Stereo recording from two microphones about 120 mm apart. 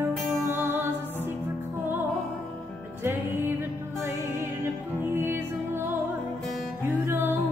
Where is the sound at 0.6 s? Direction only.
20° right (ahead or behind).